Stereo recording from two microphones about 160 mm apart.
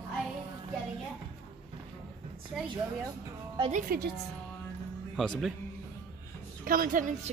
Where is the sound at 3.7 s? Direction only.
65° right (ahead or behind).